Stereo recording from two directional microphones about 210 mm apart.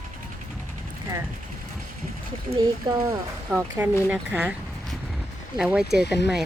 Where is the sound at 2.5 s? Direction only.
20° right (ahead or behind).